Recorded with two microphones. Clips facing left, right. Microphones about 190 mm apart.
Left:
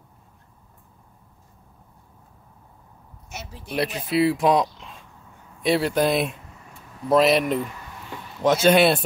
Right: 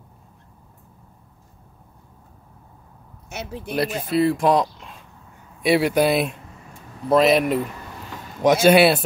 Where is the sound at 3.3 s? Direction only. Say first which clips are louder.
Right 7 dB; 65° right (ahead or behind).